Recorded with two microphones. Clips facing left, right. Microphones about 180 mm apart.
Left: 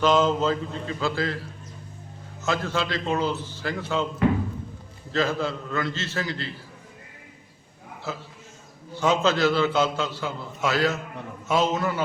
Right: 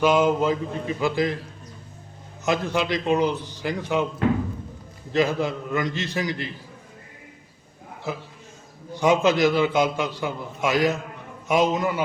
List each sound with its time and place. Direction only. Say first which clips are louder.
0.0 s a man's voice: right 1 dB; 10° right (ahead or behind)
2.4 s a man's voice: right 3 dB; 15° right (ahead or behind)
5.1 s a man's voice: right 3 dB; 15° right (ahead or behind)
8.1 s a man's voice: right 3 dB; 15° right (ahead or behind)